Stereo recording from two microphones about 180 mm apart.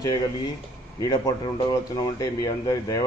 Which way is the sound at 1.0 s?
20° left (ahead or behind).